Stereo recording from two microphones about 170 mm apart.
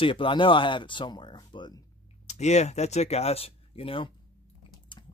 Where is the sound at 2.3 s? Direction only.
40° left (ahead or behind).